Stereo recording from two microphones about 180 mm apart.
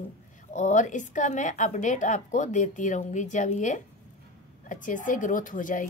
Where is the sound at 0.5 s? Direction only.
40° left (ahead or behind).